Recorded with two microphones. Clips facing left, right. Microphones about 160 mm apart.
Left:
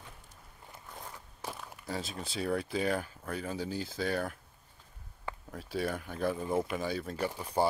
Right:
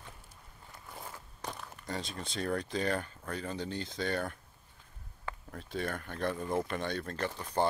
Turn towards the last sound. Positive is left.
turn(degrees=10)  # may be behind; listen again after turning